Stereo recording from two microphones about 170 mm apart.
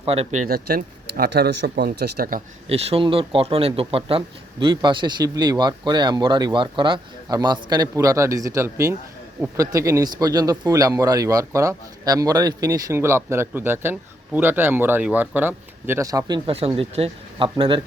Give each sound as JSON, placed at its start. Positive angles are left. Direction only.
{"t": 0.0, "sound": "speech", "side_deg": -35}
{"t": 0.4, "sound": "speech", "side_deg": -60}
{"t": 2.6, "sound": "a man's voice", "side_deg": -35}